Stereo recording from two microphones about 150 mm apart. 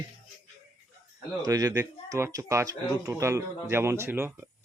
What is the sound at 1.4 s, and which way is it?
Speech, 25° right (ahead or behind).